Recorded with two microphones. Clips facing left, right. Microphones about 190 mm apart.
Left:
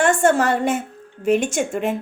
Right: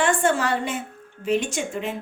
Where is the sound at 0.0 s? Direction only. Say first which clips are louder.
Left 5 dB; 45° left (ahead or behind).